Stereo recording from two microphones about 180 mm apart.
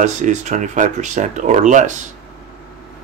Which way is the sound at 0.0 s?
40° right (ahead or behind).